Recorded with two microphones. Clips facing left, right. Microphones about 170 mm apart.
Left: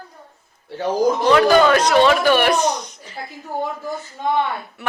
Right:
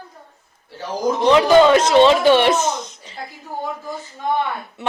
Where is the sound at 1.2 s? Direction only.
20° right (ahead or behind).